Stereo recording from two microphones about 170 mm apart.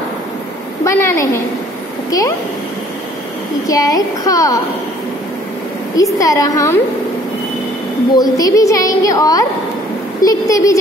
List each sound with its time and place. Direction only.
0.8 s a woman's voice: 15° left (ahead or behind)
3.6 s a woman's voice: 20° left (ahead or behind)
6.1 s a woman's voice: 20° left (ahead or behind)
8.2 s a woman's voice: 20° left (ahead or behind)